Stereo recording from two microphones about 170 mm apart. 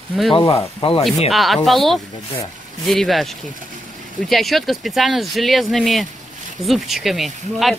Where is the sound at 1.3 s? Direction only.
Centre (ahead or behind).